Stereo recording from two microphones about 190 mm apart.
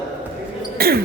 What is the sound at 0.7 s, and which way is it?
Basketball bounce, 55° right (ahead or behind).